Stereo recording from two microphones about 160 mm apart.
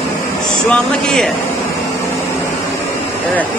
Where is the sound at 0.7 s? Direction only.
5° left (ahead or behind).